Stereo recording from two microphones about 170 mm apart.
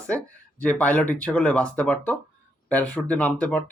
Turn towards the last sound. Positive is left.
turn(degrees=5)  # may be behind; listen again after turning